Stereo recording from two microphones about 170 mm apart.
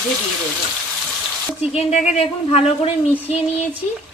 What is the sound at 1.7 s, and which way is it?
A woman's voice, 40° left (ahead or behind).